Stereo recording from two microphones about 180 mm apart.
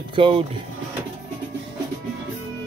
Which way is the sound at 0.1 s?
30° right (ahead or behind).